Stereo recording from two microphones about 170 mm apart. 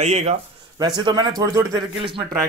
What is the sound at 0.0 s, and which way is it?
Speech, 40° right (ahead or behind).